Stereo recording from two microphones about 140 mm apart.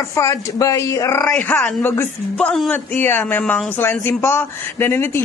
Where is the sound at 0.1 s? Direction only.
20° left (ahead or behind).